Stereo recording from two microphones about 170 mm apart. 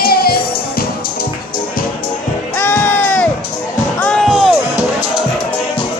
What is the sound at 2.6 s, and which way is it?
Music, 10° left (ahead or behind).